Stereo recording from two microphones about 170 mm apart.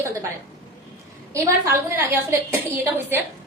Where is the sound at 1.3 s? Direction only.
15° right (ahead or behind).